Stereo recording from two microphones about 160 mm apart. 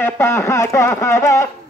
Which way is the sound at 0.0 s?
15° left (ahead or behind).